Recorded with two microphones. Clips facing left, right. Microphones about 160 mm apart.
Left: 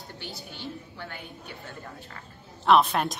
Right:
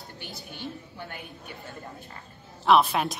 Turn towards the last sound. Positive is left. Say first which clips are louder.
# even
turn(degrees=0)  # may be behind; listen again after turning